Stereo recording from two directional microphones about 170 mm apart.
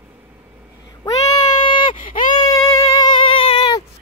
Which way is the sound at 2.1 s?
50° left (ahead or behind).